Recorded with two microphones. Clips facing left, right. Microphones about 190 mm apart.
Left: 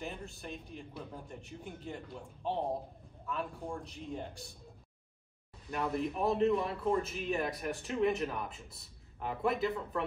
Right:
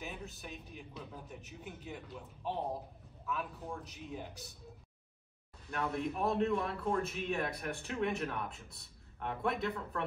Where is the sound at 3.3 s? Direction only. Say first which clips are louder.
Left 2 dB; centre (ahead or behind).